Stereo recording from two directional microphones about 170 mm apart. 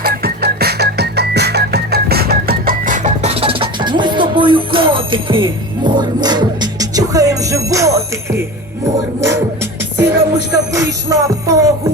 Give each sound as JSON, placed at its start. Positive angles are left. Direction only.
{"t": 0.0, "sound": "music", "side_deg": -65}
{"t": 10.0, "sound": "music", "side_deg": -15}